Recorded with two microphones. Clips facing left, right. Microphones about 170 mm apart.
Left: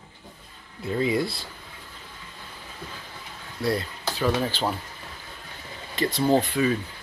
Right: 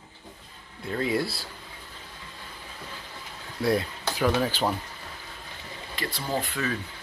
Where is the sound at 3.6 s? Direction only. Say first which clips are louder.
Right 1 dB; 15° right (ahead or behind).